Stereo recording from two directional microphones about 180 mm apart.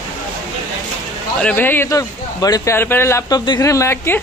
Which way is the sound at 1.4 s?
10° left (ahead or behind).